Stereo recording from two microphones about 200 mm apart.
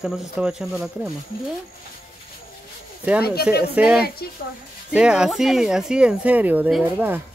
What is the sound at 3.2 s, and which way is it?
Speech, 50° left (ahead or behind).